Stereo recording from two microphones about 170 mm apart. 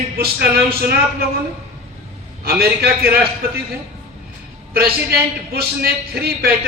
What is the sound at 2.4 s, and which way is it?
Speech, 65° right (ahead or behind).